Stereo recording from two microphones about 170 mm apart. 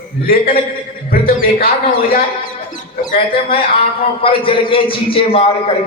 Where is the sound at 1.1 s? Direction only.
60° left (ahead or behind).